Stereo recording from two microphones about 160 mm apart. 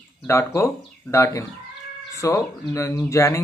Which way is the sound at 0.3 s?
20° left (ahead or behind).